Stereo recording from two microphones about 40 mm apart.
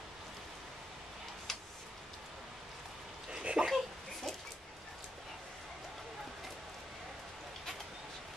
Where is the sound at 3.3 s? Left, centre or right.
Centre.